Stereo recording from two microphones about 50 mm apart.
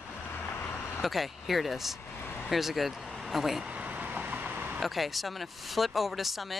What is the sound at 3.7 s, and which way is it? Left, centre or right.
Vehicle, right.